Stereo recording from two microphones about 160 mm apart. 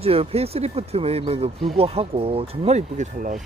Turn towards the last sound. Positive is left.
turn(degrees=-50)  # may be behind; listen again after turning